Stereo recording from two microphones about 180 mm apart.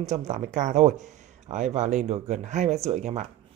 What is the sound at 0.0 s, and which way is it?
Speech, 40° right (ahead or behind).